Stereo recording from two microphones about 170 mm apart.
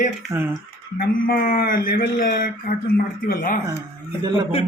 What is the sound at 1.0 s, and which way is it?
Speech, 55° left (ahead or behind).